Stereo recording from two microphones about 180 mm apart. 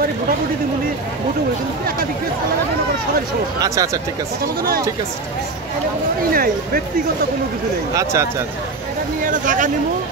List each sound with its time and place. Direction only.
3.6 s speech: 20° right (ahead or behind)
6.3 s speech: 55° right (ahead or behind)
7.9 s speech: 15° right (ahead or behind)
9.2 s speech: 45° right (ahead or behind)